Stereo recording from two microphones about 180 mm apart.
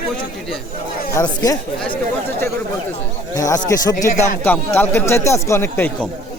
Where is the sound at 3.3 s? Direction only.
20° left (ahead or behind).